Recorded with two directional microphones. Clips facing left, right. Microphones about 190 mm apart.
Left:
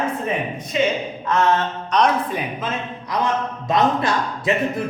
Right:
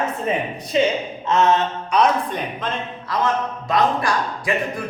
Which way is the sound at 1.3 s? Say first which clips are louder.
Right 1 dB; 20° right (ahead or behind).